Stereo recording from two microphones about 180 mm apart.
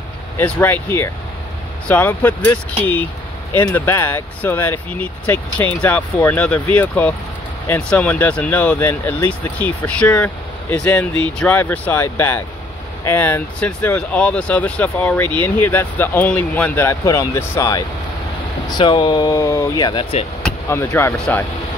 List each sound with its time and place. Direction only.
0.4 s speech: 10° left (ahead or behind); by 20.2 s 30° left (ahead or behind)
20.4 s speech: 10° left (ahead or behind)